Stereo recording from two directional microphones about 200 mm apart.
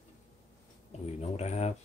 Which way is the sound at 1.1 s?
35° left (ahead or behind).